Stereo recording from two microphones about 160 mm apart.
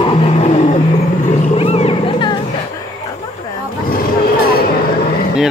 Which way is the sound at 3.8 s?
65° left (ahead or behind).